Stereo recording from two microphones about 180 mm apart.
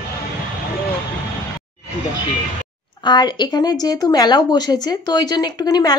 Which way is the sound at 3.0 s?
25° left (ahead or behind).